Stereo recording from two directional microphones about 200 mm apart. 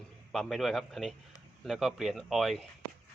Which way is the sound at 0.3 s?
Centre (ahead or behind).